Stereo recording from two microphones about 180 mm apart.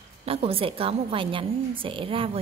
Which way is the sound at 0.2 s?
35° right (ahead or behind).